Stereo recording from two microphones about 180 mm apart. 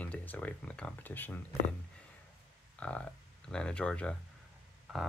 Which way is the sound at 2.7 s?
5° left (ahead or behind).